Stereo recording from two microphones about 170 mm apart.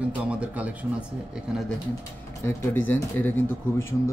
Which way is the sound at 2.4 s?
15° left (ahead or behind).